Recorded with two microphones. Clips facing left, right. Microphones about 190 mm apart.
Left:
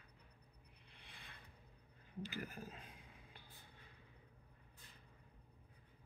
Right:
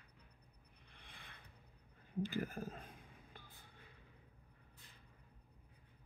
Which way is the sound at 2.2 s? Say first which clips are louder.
Right 4 dB; 50° right (ahead or behind).